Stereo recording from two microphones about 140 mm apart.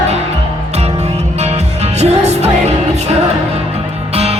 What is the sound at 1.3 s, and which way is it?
Music, 50° right (ahead or behind).